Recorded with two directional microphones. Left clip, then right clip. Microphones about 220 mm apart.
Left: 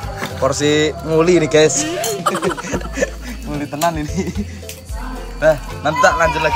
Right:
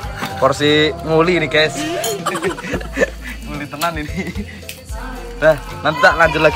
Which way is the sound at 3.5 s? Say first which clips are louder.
Left 3 dB; 15° left (ahead or behind).